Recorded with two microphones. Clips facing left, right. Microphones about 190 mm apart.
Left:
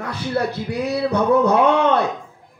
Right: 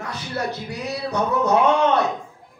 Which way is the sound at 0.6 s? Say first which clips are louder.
Left 7 dB; 55° left (ahead or behind).